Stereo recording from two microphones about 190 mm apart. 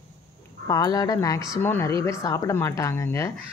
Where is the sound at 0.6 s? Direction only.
20° left (ahead or behind).